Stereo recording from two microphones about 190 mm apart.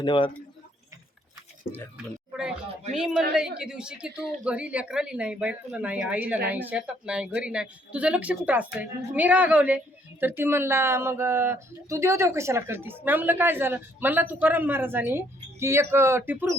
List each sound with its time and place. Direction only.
0.0 s speech: 25° left (ahead or behind)
1.7 s speech: 30° left (ahead or behind)
2.9 s speech: centre (ahead or behind)